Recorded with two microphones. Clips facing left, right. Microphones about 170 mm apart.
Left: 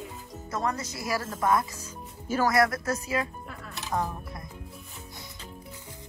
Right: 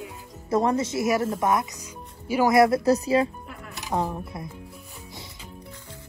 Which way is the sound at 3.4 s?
15° right (ahead or behind).